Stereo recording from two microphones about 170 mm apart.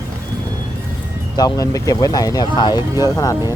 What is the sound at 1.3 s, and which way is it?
Speech, 20° left (ahead or behind).